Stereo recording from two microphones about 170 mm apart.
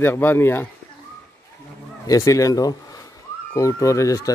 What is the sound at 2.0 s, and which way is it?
Speech, 20° left (ahead or behind).